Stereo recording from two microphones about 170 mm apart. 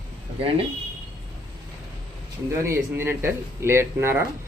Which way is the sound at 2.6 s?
15° right (ahead or behind).